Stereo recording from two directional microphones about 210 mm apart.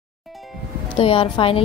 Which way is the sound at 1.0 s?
25° left (ahead or behind).